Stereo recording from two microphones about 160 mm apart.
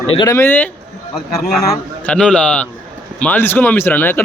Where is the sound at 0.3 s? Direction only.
15° left (ahead or behind).